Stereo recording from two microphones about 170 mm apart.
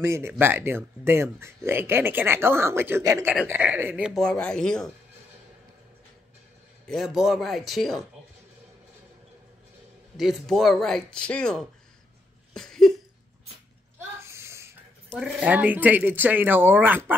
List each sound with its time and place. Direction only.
0.0 s speech: 15° right (ahead or behind)
4.2 s speech: 5° left (ahead or behind)
6.9 s speech: centre (ahead or behind)
10.1 s speech: centre (ahead or behind)
12.5 s a sound: 5° left (ahead or behind)
14.2 s a sound: 15° right (ahead or behind)
15.4 s speech: 10° right (ahead or behind)